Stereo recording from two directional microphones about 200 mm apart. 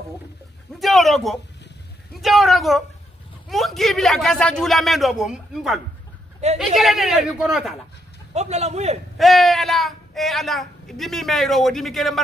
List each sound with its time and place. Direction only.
0.7 s a sound: centre (ahead or behind)
2.1 s a woman's voice: centre (ahead or behind)
8.3 s speech: 35° right (ahead or behind)
9.2 s a woman's voice: centre (ahead or behind)